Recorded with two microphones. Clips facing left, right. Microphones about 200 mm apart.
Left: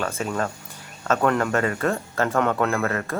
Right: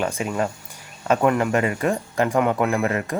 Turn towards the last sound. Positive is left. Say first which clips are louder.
# right 2 dB
turn(degrees=-15)  # may be behind; listen again after turning